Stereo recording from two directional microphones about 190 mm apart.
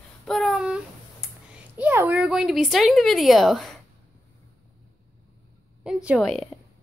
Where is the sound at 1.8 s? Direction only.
10° right (ahead or behind).